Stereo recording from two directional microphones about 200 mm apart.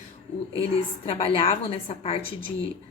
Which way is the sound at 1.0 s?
30° left (ahead or behind).